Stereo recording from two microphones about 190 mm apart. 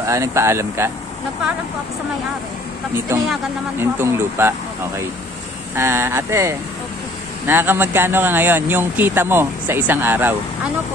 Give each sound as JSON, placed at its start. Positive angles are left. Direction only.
{"t": 0.0, "sound": "speech", "side_deg": -15}
{"t": 3.8, "sound": "speech", "side_deg": -15}